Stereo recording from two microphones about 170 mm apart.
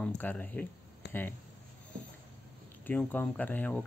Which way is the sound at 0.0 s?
10° left (ahead or behind).